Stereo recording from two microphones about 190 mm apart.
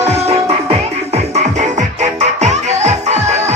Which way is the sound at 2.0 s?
35° right (ahead or behind).